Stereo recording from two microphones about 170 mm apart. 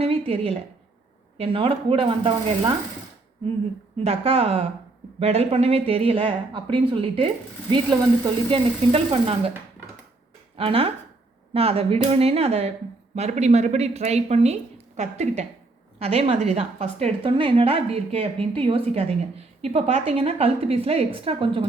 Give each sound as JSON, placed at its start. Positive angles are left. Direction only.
{"t": 0.0, "sound": "a sound", "side_deg": -35}
{"t": 1.4, "sound": "a woman's voice", "side_deg": -35}
{"t": 3.9, "sound": "a woman's voice", "side_deg": -35}
{"t": 10.6, "sound": "a woman's voice", "side_deg": -35}